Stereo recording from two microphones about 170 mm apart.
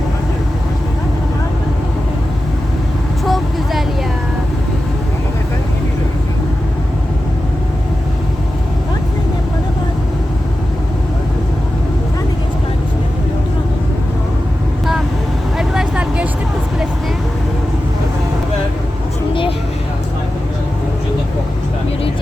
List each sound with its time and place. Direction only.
3.2 s vehicle: centre (ahead or behind)
15.5 s vehicle: 5° right (ahead or behind)
19.3 s vehicle: 30° left (ahead or behind)